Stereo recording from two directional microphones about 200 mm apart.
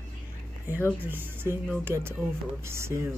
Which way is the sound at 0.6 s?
10° right (ahead or behind).